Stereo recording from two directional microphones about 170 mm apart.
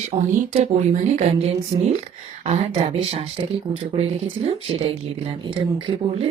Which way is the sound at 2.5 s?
35° right (ahead or behind).